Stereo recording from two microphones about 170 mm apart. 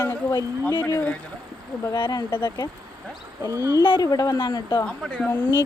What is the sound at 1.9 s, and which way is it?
Speech, 30° left (ahead or behind).